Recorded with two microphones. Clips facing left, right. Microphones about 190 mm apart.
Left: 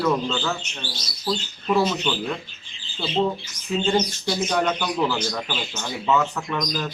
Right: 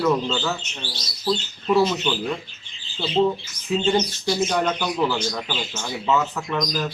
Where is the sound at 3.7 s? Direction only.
Centre (ahead or behind).